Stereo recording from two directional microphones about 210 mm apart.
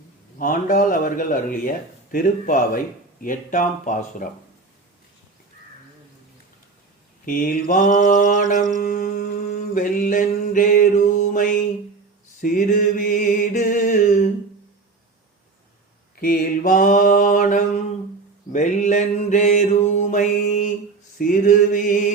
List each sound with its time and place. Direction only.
0.3 s speech: 40° left (ahead or behind)
7.3 s speech: 40° left (ahead or behind)
12.4 s mantra: 40° left (ahead or behind)
16.2 s speech: 40° left (ahead or behind)
20.0 s mantra: 35° left (ahead or behind)
21.2 s speech: 40° left (ahead or behind)